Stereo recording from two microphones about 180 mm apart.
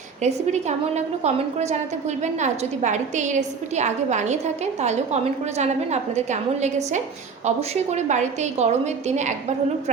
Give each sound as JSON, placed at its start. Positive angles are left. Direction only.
{"t": 0.2, "sound": "a woman's voice", "side_deg": -40}